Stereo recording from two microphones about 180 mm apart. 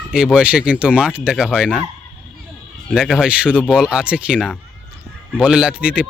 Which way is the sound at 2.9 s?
Centre (ahead or behind).